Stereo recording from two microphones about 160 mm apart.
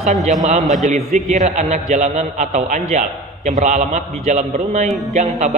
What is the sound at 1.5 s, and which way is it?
A man's voice, 45° right (ahead or behind).